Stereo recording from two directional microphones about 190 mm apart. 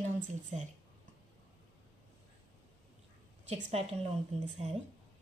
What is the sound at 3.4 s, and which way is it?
A woman's voice, 35° right (ahead or behind).